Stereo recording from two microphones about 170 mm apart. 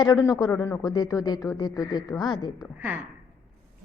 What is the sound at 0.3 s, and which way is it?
A man's voice, 20° left (ahead or behind).